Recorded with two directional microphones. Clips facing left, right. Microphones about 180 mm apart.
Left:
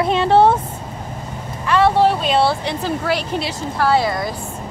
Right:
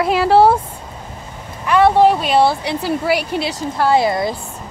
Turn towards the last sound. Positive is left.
turn(degrees=-25)  # may be behind; listen again after turning